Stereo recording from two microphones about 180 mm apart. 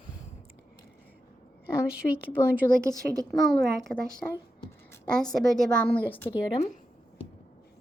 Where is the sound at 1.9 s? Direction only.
5° right (ahead or behind).